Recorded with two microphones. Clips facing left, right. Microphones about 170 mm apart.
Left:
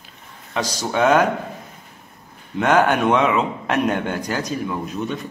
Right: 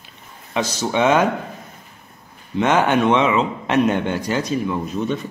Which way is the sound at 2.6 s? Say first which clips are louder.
Even; centre (ahead or behind).